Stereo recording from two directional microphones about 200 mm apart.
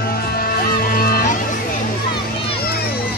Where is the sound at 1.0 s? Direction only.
45° left (ahead or behind).